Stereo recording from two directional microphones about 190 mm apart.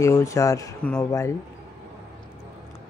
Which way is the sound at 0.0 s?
15° left (ahead or behind).